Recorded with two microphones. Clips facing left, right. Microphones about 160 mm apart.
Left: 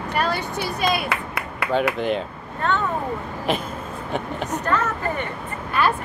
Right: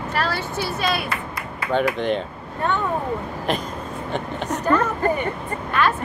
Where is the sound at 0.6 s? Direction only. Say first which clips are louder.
Even; 65° left (ahead or behind).